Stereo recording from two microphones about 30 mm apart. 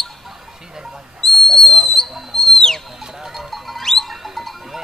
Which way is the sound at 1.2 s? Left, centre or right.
Centre.